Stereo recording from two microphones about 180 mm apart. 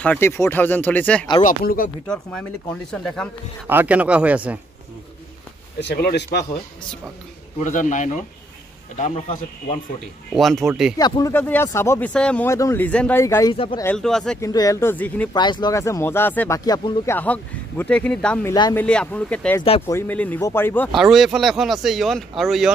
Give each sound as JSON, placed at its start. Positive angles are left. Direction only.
{"t": 0.0, "sound": "speech", "side_deg": 10}
{"t": 1.4, "sound": "a man's voice", "side_deg": 50}
{"t": 2.0, "sound": "speech", "side_deg": 5}
{"t": 3.6, "sound": "speech", "side_deg": -10}
{"t": 5.8, "sound": "speech", "side_deg": 65}
{"t": 7.5, "sound": "a man's voice", "side_deg": 45}
{"t": 10.3, "sound": "speech", "side_deg": 0}
{"t": 11.0, "sound": "speech", "side_deg": 20}
{"t": 13.9, "sound": "speech", "side_deg": 5}
{"t": 14.4, "sound": "speech", "side_deg": 20}
{"t": 15.3, "sound": "speech", "side_deg": 25}
{"t": 18.5, "sound": "speech", "side_deg": 20}
{"t": 18.9, "sound": "speech", "side_deg": 5}
{"t": 20.9, "sound": "speech", "side_deg": 0}